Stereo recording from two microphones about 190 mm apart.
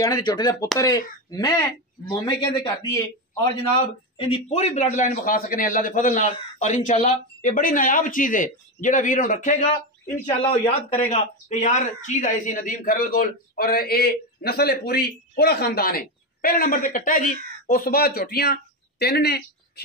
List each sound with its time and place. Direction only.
0.0 s a man's voice: 20° left (ahead or behind); by 19.8 s 55° left (ahead or behind)